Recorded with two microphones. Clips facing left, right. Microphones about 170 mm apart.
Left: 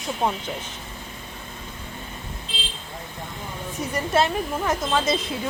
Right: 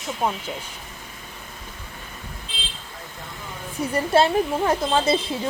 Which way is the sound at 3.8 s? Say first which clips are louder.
Right 3 dB; 30° right (ahead or behind).